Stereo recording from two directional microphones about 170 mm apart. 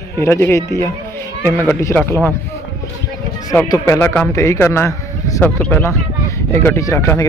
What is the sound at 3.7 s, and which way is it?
Speech, 15° left (ahead or behind).